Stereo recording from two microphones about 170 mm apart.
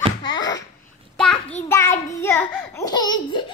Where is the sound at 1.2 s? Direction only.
5° left (ahead or behind).